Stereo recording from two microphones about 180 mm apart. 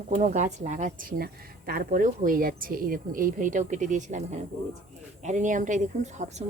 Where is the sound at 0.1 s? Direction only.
40° right (ahead or behind).